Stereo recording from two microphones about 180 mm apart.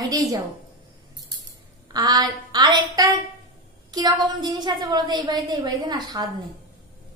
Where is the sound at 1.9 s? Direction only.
20° right (ahead or behind).